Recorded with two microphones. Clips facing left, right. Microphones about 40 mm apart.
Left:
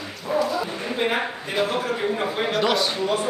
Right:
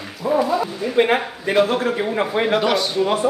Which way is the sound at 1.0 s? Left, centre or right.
Right.